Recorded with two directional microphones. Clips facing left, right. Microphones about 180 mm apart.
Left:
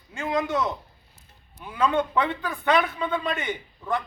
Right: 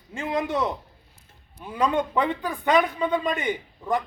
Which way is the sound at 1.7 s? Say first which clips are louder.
Even; 15° right (ahead or behind).